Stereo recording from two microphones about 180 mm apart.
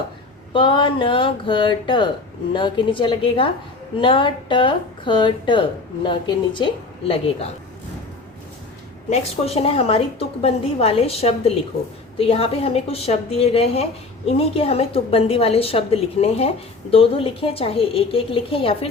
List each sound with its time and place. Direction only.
0.5 s speech: 25° left (ahead or behind)
9.0 s a woman's voice: 35° left (ahead or behind)